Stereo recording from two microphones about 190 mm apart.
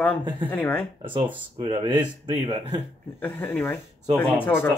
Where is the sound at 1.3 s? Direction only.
25° right (ahead or behind).